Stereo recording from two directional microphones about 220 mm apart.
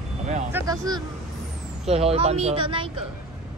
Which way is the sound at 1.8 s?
30° right (ahead or behind).